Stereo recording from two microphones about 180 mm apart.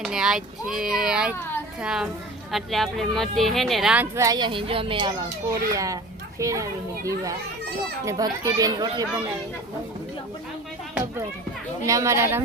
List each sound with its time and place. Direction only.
0.0 s a child's voice: 5° right (ahead or behind); by 9.0 s 20° right (ahead or behind)
11.9 s a child's voice: 15° right (ahead or behind)